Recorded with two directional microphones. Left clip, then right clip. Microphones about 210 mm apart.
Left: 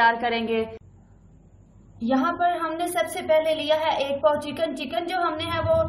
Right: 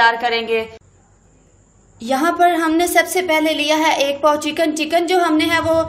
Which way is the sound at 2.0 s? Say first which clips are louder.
Right 8 dB; 35° right (ahead or behind).